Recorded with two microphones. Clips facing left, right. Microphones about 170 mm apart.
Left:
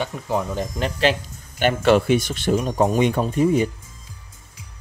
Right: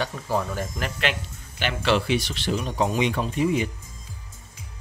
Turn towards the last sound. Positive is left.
turn(degrees=45)  # may be behind; listen again after turning